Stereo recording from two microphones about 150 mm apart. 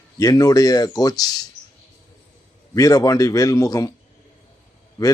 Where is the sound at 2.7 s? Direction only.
25° left (ahead or behind).